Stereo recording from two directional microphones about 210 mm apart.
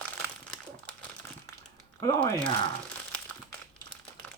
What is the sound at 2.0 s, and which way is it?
Speech, 25° left (ahead or behind).